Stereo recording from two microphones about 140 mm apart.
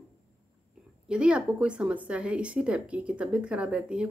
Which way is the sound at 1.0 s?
5° right (ahead or behind).